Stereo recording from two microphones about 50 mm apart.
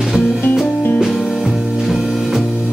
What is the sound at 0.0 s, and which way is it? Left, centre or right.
Music, centre.